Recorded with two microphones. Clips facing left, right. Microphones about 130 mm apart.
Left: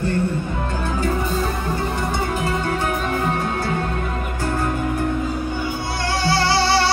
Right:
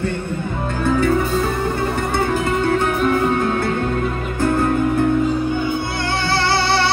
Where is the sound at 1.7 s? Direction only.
55° right (ahead or behind).